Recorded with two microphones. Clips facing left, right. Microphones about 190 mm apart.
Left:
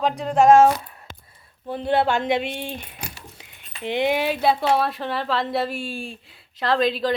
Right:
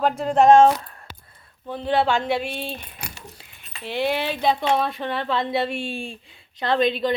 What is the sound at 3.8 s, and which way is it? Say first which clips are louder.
A woman's voice: left 2 dB; 20° left (ahead or behind).